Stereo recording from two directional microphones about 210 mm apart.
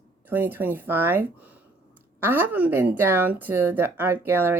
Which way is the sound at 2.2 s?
10° right (ahead or behind).